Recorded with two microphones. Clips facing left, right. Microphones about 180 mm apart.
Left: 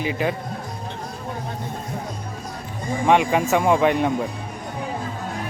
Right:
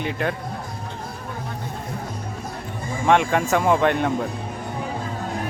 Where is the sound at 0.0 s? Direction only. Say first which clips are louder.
Left 2 dB; centre (ahead or behind).